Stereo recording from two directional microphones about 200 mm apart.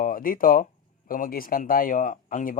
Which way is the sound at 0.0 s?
45° left (ahead or behind).